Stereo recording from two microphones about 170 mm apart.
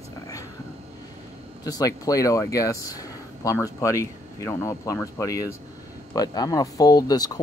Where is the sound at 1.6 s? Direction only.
20° left (ahead or behind).